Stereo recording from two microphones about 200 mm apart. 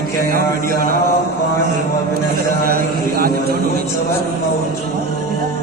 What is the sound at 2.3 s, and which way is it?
A man's voice, 45° right (ahead or behind).